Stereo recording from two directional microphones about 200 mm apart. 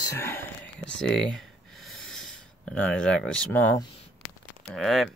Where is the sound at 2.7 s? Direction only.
5° left (ahead or behind).